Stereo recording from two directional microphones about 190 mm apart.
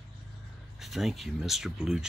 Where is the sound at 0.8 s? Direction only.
Centre (ahead or behind).